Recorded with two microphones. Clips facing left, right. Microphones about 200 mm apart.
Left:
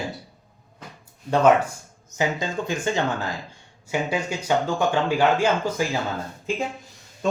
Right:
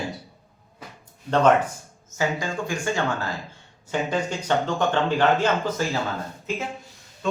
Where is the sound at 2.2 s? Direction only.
20° left (ahead or behind).